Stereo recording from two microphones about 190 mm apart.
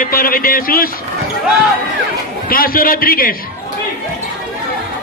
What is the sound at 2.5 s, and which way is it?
Speech, 50° left (ahead or behind).